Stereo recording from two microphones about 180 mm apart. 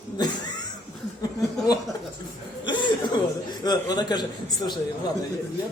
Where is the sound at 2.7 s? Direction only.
25° left (ahead or behind).